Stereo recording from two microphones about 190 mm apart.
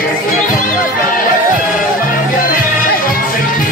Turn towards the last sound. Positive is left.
turn(degrees=45)  # may be behind; listen again after turning